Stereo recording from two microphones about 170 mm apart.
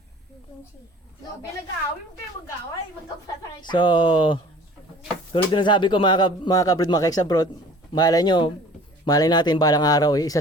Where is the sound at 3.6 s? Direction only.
25° left (ahead or behind).